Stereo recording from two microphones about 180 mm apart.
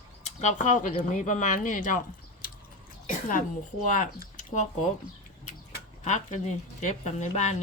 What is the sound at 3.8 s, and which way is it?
Speech, 45° left (ahead or behind).